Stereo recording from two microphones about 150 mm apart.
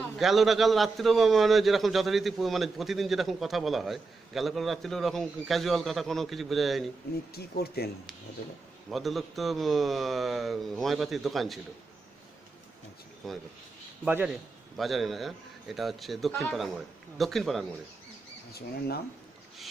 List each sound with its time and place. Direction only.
0.2 s a man's voice: centre (ahead or behind)
7.3 s speech: 90° left
8.9 s a man's voice: centre (ahead or behind)
13.2 s a man's voice: centre (ahead or behind)